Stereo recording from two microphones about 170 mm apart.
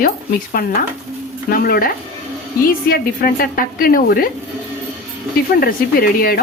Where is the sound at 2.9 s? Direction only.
60° left (ahead or behind).